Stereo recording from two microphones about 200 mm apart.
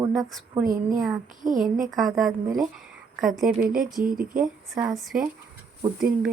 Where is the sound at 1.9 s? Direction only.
Centre (ahead or behind).